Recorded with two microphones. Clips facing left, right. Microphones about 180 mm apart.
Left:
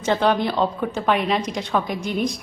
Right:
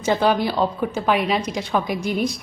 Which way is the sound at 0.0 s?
5° right (ahead or behind).